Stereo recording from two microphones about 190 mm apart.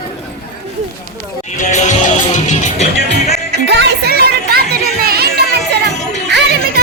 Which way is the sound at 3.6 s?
60° right (ahead or behind).